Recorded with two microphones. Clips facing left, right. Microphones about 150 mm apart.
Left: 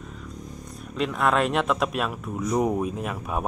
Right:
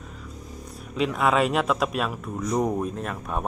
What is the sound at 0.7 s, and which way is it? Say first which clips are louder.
A man's voice: right 2 dB; centre (ahead or behind).